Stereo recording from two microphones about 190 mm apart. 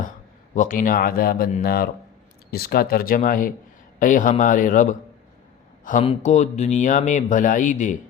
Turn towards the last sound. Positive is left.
turn(degrees=40)  # may be behind; listen again after turning